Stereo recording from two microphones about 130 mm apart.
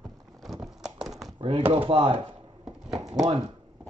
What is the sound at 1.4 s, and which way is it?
Speech, 45° right (ahead or behind).